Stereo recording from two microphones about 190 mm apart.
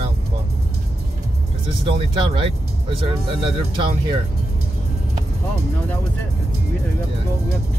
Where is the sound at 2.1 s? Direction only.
25° right (ahead or behind).